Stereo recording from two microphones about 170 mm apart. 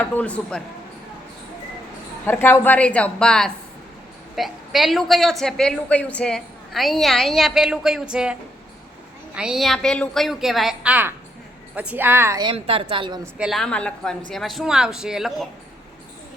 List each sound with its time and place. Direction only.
0.0 s a woman's voice: 10° left (ahead or behind)
2.2 s a woman's voice: 10° left (ahead or behind); by 12.4 s 15° right (ahead or behind)
12.4 s a woman's voice: 30° right (ahead or behind)
13.4 s a woman's voice: centre (ahead or behind)